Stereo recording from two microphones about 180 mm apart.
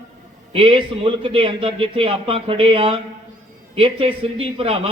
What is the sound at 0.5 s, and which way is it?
A man's voice, 30° right (ahead or behind).